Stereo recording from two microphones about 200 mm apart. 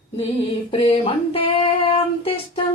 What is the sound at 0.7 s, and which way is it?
Child singing, 25° left (ahead or behind).